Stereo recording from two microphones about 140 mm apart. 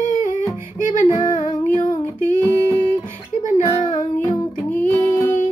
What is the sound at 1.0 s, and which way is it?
Female singing, 35° left (ahead or behind).